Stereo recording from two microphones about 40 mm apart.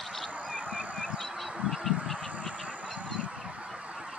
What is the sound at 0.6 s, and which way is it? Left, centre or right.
Goose, right.